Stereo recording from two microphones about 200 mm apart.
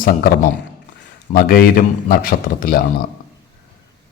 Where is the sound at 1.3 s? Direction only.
50° left (ahead or behind).